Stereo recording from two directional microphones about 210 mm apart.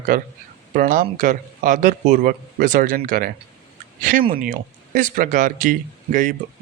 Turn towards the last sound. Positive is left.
turn(degrees=-40)  # may be behind; listen again after turning